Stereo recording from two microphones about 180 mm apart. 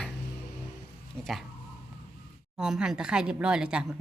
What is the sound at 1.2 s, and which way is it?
Speech, centre (ahead or behind).